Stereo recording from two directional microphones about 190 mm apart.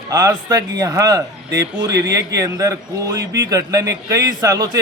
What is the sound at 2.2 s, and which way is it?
A man's voice, 15° right (ahead or behind).